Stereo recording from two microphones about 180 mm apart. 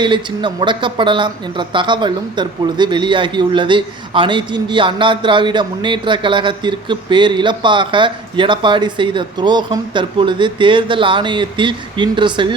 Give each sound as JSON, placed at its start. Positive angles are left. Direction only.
{"t": 0.0, "sound": "speech", "side_deg": -25}